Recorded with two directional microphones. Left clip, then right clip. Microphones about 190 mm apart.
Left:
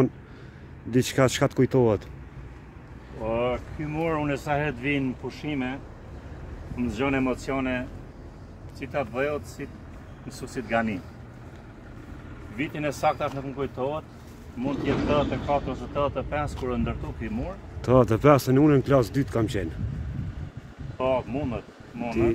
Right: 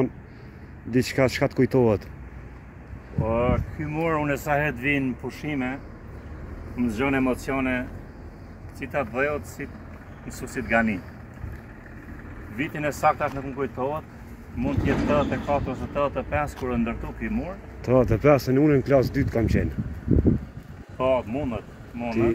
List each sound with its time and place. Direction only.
0.9 s speech: 15° left (ahead or behind)
3.3 s speech: 5° right (ahead or behind)
6.8 s speech: 25° right (ahead or behind)
12.5 s speech: 5° right (ahead or behind)
14.6 s speech: 10° right (ahead or behind)
17.8 s speech: 20° left (ahead or behind)
21.0 s speech: 10° right (ahead or behind)